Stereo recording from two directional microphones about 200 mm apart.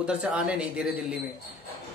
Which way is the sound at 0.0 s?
5° right (ahead or behind).